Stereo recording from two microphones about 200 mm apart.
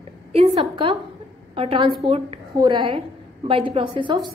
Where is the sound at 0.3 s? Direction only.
30° right (ahead or behind).